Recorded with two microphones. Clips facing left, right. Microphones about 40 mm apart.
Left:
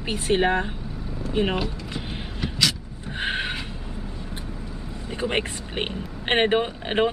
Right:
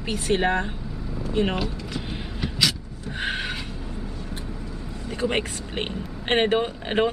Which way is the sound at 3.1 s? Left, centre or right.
Centre.